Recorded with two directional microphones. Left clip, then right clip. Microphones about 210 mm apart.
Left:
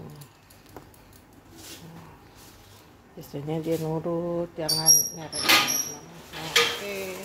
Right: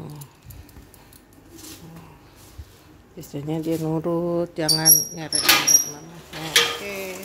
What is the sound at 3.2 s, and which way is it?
Speech, 15° right (ahead or behind).